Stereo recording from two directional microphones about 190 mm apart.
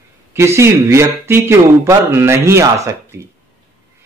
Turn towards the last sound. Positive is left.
turn(degrees=-15)  # may be behind; listen again after turning